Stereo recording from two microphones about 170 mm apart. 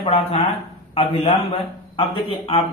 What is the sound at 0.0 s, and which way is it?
Speech, 35° left (ahead or behind).